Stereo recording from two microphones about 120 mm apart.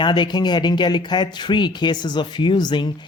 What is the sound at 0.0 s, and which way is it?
Speech, 40° left (ahead or behind).